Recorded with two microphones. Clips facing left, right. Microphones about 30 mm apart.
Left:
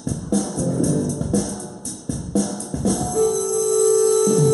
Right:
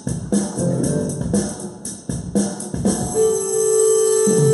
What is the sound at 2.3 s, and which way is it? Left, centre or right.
Music, right.